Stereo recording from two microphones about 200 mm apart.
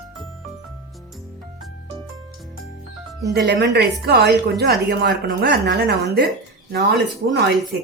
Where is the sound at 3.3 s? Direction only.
55° right (ahead or behind).